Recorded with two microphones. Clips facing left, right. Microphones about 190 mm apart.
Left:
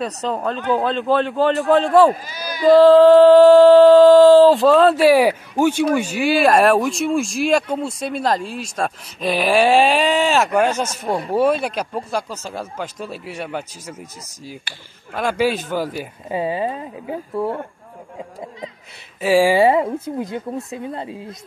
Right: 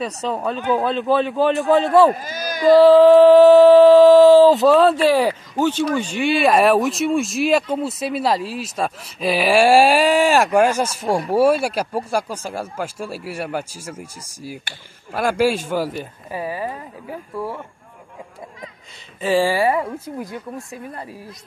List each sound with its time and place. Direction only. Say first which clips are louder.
0.0 s music: left 1 dB; 5° right (ahead or behind)
2.2 s speech: even; 50° right (ahead or behind)
2.7 s music: even; 5° right (ahead or behind)
4.9 s speech: left 3 dB; 10° left (ahead or behind)
5.9 s music: left 2 dB; 5° left (ahead or behind)
7.7 s speech: right 1 dB; 5° right (ahead or behind)
16.3 s a woman's voice: left 5 dB; 25° left (ahead or behind)
19.2 s speech: left 3 dB; 10° left (ahead or behind)
19.6 s a woman's voice: left 4 dB; 25° left (ahead or behind)